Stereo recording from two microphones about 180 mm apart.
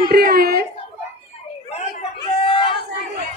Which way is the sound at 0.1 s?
60° right (ahead or behind).